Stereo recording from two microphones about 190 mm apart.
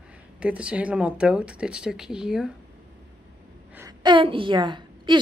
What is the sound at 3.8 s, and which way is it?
A woman's voice, 25° right (ahead or behind).